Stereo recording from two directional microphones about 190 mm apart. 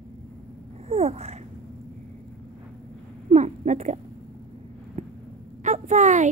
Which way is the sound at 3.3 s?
40° right (ahead or behind).